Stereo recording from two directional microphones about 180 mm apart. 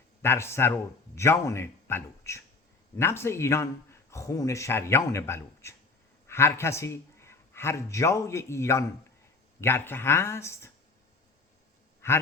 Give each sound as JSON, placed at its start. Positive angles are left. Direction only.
{"t": 0.2, "sound": "a man's voice", "side_deg": 15}
{"t": 12.0, "sound": "speech", "side_deg": 15}